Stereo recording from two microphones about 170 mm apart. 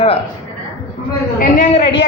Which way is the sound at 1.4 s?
50° left (ahead or behind).